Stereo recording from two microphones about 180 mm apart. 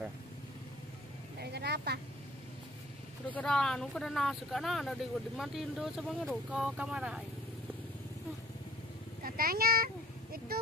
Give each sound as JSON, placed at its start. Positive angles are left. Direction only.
{"t": 1.4, "sound": "a sound", "side_deg": -65}
{"t": 3.3, "sound": "speech", "side_deg": 5}
{"t": 9.2, "sound": "speech", "side_deg": -55}